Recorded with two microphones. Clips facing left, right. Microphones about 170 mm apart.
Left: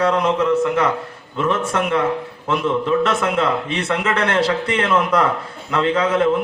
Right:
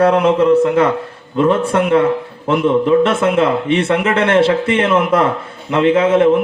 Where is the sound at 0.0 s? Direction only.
30° right (ahead or behind).